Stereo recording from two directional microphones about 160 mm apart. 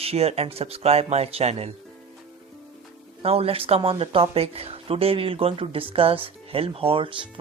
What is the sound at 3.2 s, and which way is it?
Speech, 40° right (ahead or behind).